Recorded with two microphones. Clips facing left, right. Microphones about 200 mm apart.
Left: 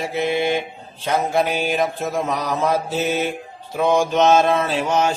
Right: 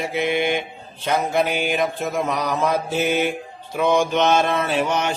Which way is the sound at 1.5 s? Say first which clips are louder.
Left 1 dB; 60° right (ahead or behind).